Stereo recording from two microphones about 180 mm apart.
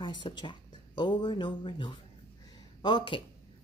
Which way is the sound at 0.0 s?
25° left (ahead or behind).